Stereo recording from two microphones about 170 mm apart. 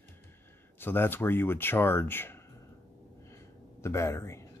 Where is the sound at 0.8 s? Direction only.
10° left (ahead or behind).